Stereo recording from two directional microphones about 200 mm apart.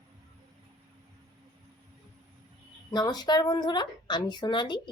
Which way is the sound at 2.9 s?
20° left (ahead or behind).